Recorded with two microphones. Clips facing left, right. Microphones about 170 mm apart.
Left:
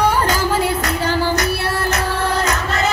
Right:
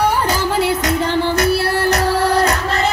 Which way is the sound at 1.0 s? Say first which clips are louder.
Right 1 dB; 30° right (ahead or behind).